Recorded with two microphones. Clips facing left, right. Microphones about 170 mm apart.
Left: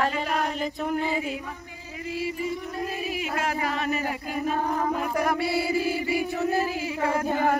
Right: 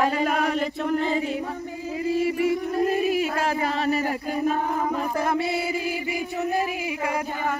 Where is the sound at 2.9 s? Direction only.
35° right (ahead or behind).